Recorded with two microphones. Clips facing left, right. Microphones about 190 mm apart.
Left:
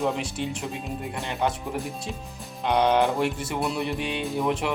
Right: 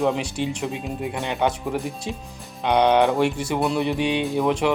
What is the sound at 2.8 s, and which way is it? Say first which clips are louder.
Speech: right 4 dB; 70° right (ahead or behind).